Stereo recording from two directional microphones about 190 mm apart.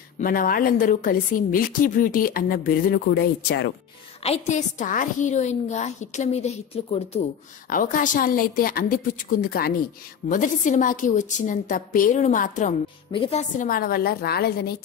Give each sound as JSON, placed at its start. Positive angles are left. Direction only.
{"t": 0.2, "sound": "a woman's voice", "side_deg": 50}
{"t": 4.2, "sound": "a woman's voice", "side_deg": 35}
{"t": 7.7, "sound": "a woman's voice", "side_deg": 45}
{"t": 10.3, "sound": "a woman's voice", "side_deg": 40}
{"t": 13.1, "sound": "a woman's voice", "side_deg": 30}